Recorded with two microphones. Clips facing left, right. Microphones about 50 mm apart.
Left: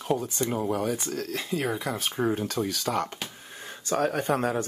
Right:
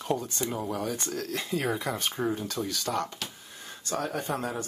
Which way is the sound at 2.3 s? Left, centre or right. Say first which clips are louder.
Left 4 dB; left.